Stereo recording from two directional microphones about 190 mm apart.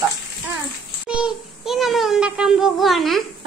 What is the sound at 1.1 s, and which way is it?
Child singing, 5° right (ahead or behind).